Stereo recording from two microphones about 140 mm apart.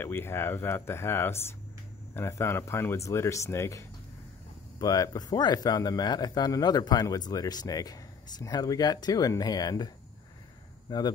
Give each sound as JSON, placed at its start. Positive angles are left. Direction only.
{"t": 0.0, "sound": "speech", "side_deg": 15}
{"t": 10.9, "sound": "speech", "side_deg": 30}